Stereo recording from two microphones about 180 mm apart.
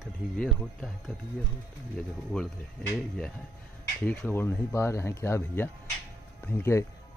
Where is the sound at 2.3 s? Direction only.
5° left (ahead or behind).